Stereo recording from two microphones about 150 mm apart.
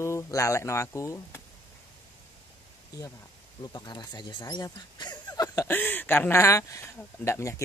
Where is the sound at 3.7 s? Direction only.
25° left (ahead or behind).